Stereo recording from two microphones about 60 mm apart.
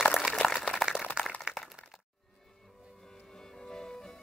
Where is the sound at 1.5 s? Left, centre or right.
Centre.